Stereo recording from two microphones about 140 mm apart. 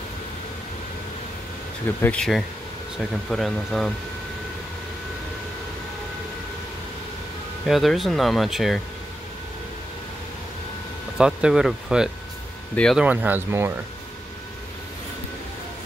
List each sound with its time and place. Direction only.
1.9 s speech: 15° left (ahead or behind)
2.1 s speech: centre (ahead or behind)
7.6 s speech: centre (ahead or behind)
11.1 s speech: 5° right (ahead or behind)